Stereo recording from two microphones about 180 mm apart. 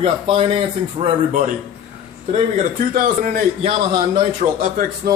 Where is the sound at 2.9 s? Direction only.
50° right (ahead or behind).